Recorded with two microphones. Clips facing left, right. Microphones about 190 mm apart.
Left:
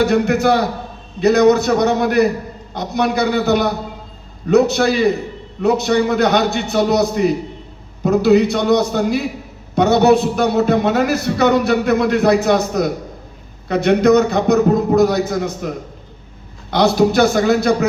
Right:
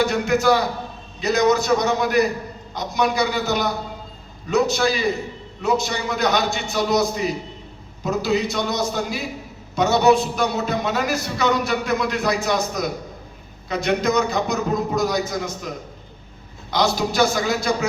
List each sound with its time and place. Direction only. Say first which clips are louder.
0.0 s a man's voice: left 4 dB; 60° left (ahead or behind)
16.7 s a man's voice: left 7 dB; 60° left (ahead or behind)